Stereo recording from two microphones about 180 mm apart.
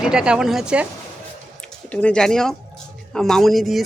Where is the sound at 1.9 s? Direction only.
5° left (ahead or behind).